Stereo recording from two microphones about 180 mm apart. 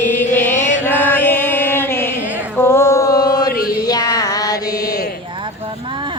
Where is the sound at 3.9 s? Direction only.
20° left (ahead or behind).